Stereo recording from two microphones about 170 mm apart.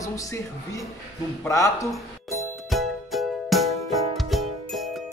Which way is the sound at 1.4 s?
20° left (ahead or behind).